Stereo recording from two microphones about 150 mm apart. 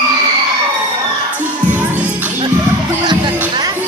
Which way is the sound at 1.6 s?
10° right (ahead or behind).